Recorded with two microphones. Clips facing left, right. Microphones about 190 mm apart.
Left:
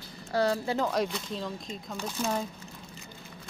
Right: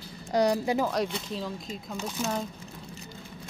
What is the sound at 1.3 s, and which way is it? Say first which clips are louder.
Speech: right 1 dB; 5° right (ahead or behind).